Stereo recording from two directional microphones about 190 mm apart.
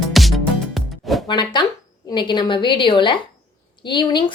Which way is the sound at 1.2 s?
25° left (ahead or behind).